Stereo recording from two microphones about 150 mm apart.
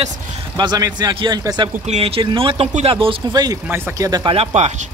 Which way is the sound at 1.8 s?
45° right (ahead or behind).